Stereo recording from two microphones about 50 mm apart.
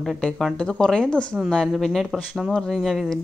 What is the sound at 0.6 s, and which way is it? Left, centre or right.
Speech, centre.